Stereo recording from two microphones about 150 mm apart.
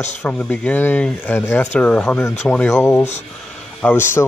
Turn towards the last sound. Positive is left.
turn(degrees=15)  # may be behind; listen again after turning